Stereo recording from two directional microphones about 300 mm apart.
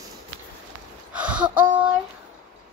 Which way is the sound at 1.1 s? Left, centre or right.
Centre.